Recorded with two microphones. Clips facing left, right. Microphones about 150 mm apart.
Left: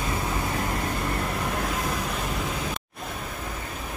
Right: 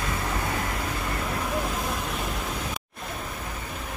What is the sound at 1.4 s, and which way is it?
Vehicle, centre (ahead or behind).